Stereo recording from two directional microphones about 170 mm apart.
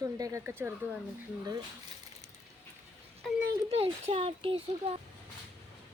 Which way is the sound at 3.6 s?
35° right (ahead or behind).